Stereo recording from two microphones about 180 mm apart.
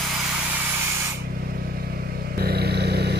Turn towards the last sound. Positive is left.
turn(degrees=-65)  # may be behind; listen again after turning